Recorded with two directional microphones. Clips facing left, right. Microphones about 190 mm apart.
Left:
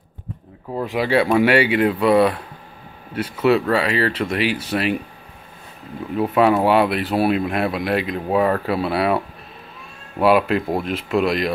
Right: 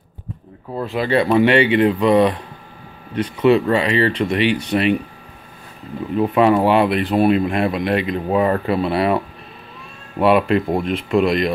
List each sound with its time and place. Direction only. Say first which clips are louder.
0.7 s speech: even; 10° left (ahead or behind)
6.1 s speech: right 2 dB; centre (ahead or behind)